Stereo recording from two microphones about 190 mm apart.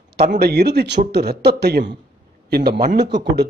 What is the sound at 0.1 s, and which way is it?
A man's voice, 55° right (ahead or behind).